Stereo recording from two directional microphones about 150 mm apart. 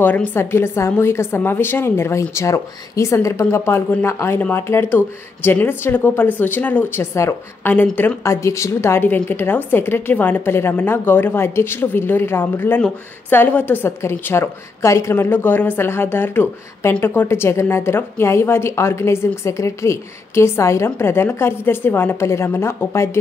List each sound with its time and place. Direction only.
0.0 s a woman's voice: 10° left (ahead or behind)